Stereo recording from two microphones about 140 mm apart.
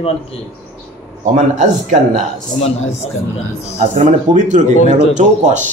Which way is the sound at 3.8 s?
60° right (ahead or behind).